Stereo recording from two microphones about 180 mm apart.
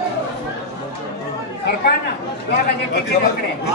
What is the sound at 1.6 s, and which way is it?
Speech, 60° left (ahead or behind).